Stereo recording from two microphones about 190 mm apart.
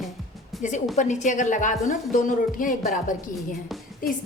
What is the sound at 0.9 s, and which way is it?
A woman's voice, 40° left (ahead or behind).